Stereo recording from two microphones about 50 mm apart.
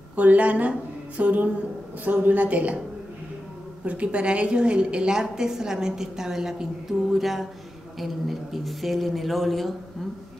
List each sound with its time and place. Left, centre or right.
0.1 s a woman's voice: right
3.8 s a woman's voice: right; by 9.8 s centre